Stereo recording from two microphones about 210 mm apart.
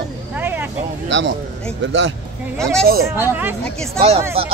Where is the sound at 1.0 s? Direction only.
60° right (ahead or behind).